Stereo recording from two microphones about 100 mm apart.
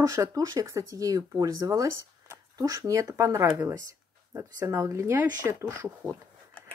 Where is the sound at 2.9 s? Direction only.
30° right (ahead or behind).